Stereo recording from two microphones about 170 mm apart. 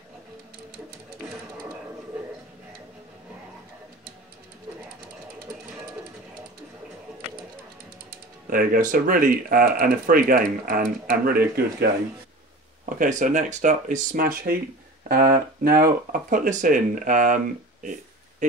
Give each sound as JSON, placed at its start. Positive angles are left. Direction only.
{"t": 8.5, "sound": "speech", "side_deg": -55}
{"t": 13.0, "sound": "speech", "side_deg": -45}
{"t": 18.4, "sound": "a sound", "side_deg": -45}